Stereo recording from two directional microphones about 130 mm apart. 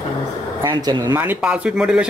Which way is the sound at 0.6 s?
30° right (ahead or behind).